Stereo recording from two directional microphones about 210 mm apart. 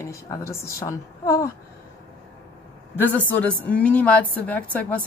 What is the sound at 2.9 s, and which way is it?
A woman's voice, 10° left (ahead or behind).